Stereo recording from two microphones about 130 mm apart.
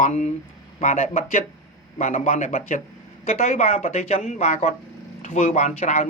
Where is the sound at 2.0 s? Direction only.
60° left (ahead or behind); by 2.5 s 85° left.